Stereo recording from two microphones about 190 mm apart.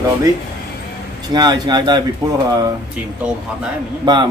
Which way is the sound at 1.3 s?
20° right (ahead or behind).